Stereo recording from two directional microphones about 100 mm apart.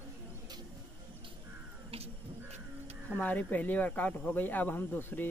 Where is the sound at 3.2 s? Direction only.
15° left (ahead or behind).